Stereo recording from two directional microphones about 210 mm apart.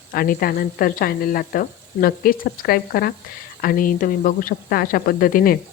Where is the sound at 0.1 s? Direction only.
45° left (ahead or behind).